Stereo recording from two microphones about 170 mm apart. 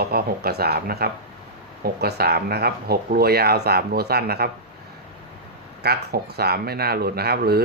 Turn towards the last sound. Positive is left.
turn(degrees=-70)  # may be behind; listen again after turning